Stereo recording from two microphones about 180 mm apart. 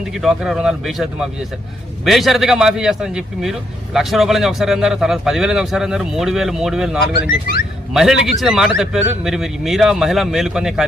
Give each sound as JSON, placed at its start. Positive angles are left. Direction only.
{"t": 0.0, "sound": "a man's voice", "side_deg": 0}
{"t": 7.3, "sound": "speech", "side_deg": 60}
{"t": 7.9, "sound": "a man's voice", "side_deg": 0}